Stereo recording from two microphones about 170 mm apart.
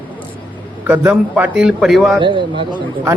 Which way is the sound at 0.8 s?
10° right (ahead or behind).